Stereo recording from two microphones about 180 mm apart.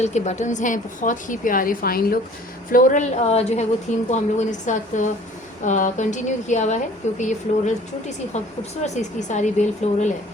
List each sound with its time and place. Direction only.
0.0 s a woman's voice: 40° left (ahead or behind); by 2.1 s 55° left (ahead or behind)
2.7 s a woman's voice: 45° left (ahead or behind)
8.8 s a woman's voice: 40° left (ahead or behind)